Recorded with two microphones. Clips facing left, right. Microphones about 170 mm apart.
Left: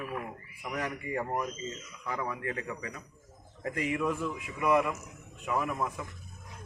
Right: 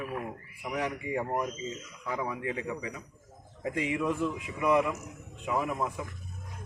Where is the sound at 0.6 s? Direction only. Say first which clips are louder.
Right 2 dB; 10° right (ahead or behind).